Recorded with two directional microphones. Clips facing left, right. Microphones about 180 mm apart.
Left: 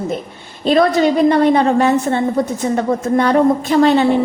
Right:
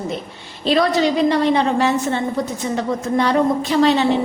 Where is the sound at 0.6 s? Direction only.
50° left (ahead or behind).